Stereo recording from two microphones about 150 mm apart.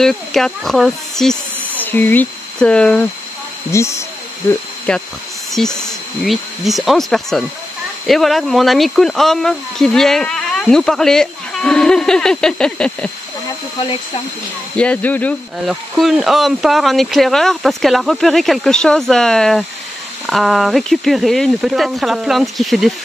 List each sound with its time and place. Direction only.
0.0 s speech: centre (ahead or behind)
3.7 s speech: 20° left (ahead or behind)
4.9 s speech: 5° left (ahead or behind)
14.8 s speech: 10° left (ahead or behind)
15.6 s speech: centre (ahead or behind)